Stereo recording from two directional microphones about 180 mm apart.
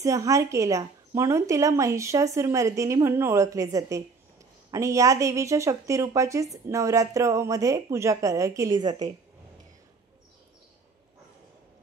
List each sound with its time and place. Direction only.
0.0 s a woman's voice: 20° right (ahead or behind)